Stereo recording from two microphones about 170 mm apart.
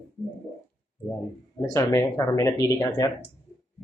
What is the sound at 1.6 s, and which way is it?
Speech, 20° left (ahead or behind).